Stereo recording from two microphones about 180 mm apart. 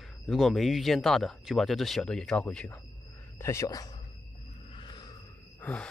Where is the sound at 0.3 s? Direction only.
Centre (ahead or behind); by 4.0 s 20° left (ahead or behind).